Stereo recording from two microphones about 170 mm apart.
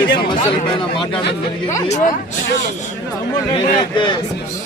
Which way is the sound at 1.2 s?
75° left (ahead or behind).